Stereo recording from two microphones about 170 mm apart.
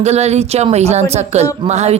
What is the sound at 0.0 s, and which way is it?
A woman's voice, 40° right (ahead or behind).